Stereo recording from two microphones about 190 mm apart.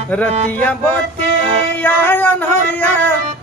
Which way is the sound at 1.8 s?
10° left (ahead or behind).